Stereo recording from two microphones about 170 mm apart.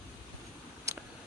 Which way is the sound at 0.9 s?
20° right (ahead or behind).